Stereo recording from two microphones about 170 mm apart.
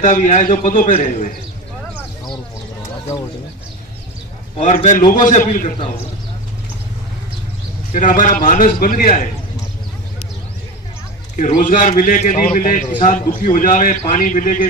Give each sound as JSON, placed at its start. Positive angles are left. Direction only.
{"t": 0.0, "sound": "a man's voice", "side_deg": 50}
{"t": 4.6, "sound": "a man's voice", "side_deg": 45}
{"t": 7.9, "sound": "a man's voice", "side_deg": 50}
{"t": 11.3, "sound": "a man's voice", "side_deg": 50}